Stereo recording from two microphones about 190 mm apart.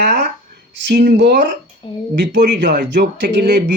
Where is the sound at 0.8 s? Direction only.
65° right (ahead or behind).